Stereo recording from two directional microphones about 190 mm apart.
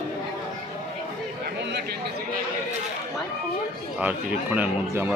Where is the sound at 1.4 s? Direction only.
65° right (ahead or behind).